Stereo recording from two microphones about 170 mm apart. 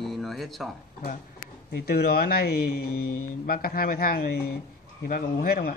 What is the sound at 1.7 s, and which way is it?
Speech, 65° left (ahead or behind).